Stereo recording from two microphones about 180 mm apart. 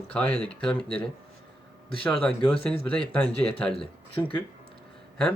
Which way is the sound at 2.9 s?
5° left (ahead or behind).